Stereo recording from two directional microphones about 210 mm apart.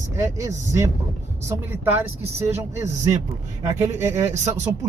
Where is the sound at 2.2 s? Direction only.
30° right (ahead or behind).